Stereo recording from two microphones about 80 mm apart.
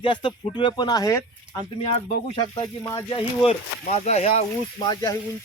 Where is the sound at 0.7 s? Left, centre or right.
Left.